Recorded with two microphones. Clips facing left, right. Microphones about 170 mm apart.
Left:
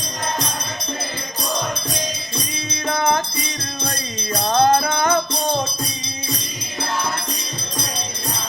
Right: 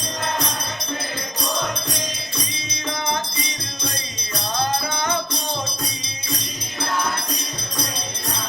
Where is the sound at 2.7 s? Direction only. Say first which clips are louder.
Left 7 dB; 55° left (ahead or behind).